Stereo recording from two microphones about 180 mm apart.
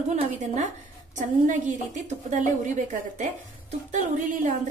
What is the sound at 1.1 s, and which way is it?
A woman's voice, 45° right (ahead or behind).